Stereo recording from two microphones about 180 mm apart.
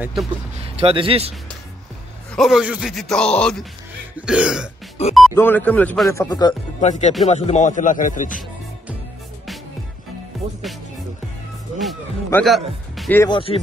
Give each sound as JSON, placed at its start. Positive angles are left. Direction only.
{"t": 0.0, "sound": "speech", "side_deg": 0}
{"t": 0.6, "sound": "speech", "side_deg": -30}
{"t": 2.3, "sound": "speech", "side_deg": 0}
{"t": 5.0, "sound": "music", "side_deg": 35}
{"t": 5.3, "sound": "speech", "side_deg": 10}
{"t": 6.1, "sound": "speech", "side_deg": 20}
{"t": 6.8, "sound": "speech", "side_deg": 40}
{"t": 10.3, "sound": "music", "side_deg": 0}
{"t": 12.4, "sound": "speech", "side_deg": 0}
{"t": 13.3, "sound": "speech", "side_deg": 30}